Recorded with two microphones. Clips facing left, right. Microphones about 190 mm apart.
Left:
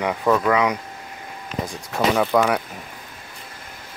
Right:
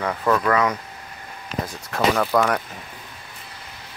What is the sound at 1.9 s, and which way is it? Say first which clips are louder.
Speech: left 1 dB; 10° left (ahead or behind).